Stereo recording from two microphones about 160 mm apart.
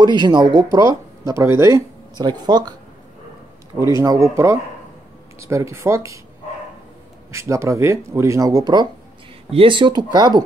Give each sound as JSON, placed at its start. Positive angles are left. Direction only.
{"t": 0.0, "sound": "speech", "side_deg": -25}
{"t": 3.8, "sound": "speech", "side_deg": -20}
{"t": 7.2, "sound": "speech", "side_deg": -20}